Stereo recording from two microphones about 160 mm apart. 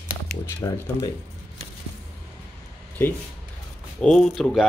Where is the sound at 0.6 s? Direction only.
20° left (ahead or behind).